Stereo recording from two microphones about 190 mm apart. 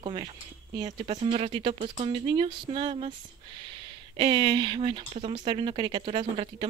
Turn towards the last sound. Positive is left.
turn(degrees=-25)  # may be behind; listen again after turning